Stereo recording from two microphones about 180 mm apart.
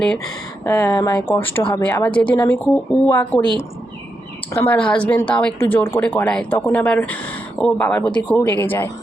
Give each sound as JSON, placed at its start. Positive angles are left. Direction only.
{"t": 0.6, "sound": "speech", "side_deg": 15}
{"t": 1.6, "sound": "a woman's voice", "side_deg": 25}
{"t": 2.4, "sound": "speech", "side_deg": 15}
{"t": 4.5, "sound": "speech", "side_deg": 10}